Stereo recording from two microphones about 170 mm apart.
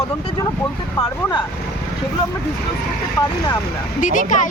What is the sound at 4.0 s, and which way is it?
Speech, 50° left (ahead or behind).